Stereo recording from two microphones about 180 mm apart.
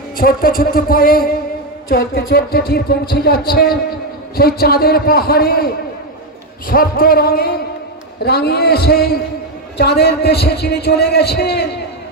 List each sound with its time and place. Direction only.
0.2 s speech: 55° left (ahead or behind)